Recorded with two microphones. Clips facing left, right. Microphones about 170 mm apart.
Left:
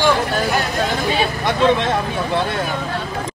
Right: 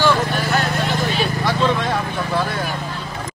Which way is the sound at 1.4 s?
25° left (ahead or behind).